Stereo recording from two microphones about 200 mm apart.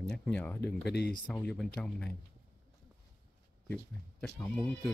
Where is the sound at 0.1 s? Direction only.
5° left (ahead or behind).